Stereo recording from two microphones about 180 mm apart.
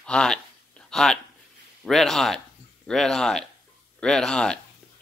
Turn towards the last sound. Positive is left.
turn(degrees=5)  # may be behind; listen again after turning